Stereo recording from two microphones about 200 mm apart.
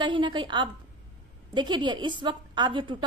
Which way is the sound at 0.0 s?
25° right (ahead or behind).